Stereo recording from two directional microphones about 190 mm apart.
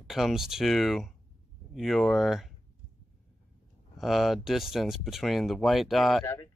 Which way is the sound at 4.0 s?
Centre (ahead or behind).